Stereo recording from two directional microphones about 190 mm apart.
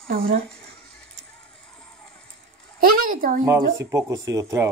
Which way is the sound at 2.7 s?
45° right (ahead or behind).